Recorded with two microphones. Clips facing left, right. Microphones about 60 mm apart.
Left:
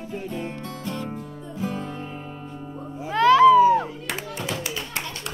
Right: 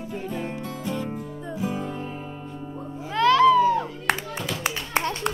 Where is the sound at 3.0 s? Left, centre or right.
Centre.